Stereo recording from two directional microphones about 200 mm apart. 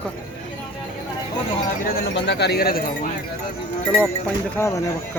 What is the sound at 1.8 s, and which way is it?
Speech, 60° left (ahead or behind).